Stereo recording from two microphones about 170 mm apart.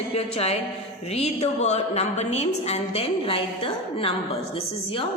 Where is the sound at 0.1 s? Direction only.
35° left (ahead or behind).